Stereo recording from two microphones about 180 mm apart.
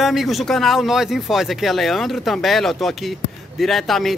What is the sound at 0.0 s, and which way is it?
A man's voice, centre (ahead or behind).